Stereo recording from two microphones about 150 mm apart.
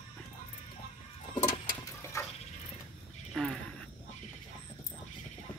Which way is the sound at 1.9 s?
20° left (ahead or behind).